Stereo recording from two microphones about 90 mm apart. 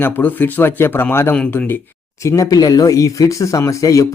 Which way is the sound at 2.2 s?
40° left (ahead or behind).